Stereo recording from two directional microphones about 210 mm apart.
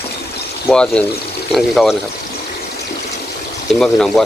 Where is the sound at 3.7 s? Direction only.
Centre (ahead or behind).